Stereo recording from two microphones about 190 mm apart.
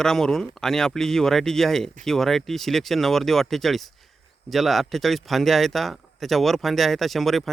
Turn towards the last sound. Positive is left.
turn(degrees=0)  # may be behind; listen again after turning